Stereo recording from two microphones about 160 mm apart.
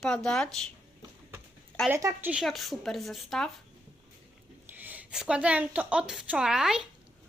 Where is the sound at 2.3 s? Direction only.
Centre (ahead or behind).